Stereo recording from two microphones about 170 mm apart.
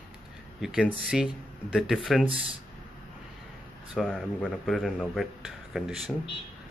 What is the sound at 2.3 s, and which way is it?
Speech, 30° right (ahead or behind).